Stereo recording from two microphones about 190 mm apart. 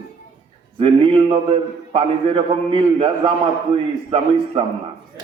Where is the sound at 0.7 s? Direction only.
25° right (ahead or behind).